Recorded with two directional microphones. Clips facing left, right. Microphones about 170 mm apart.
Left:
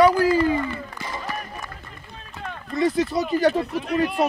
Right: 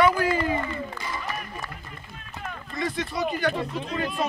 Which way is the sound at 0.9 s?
30° left (ahead or behind).